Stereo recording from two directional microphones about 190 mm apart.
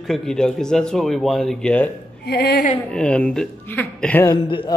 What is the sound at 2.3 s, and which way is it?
Speech, 55° left (ahead or behind).